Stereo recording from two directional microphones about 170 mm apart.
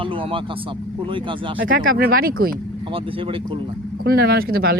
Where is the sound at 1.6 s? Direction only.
55° right (ahead or behind).